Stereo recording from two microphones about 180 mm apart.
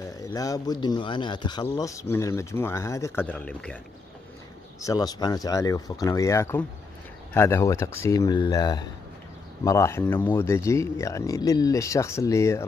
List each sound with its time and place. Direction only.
0.2 s speech: 20° left (ahead or behind)
4.7 s speech: 20° left (ahead or behind)